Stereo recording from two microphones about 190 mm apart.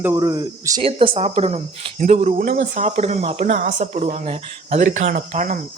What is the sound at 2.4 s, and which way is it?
Speech, 45° right (ahead or behind).